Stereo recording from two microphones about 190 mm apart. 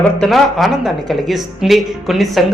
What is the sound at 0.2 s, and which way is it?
A woman's voice, centre (ahead or behind).